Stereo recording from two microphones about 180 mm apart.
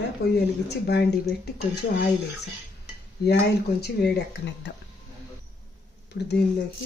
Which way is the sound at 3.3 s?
60° left (ahead or behind).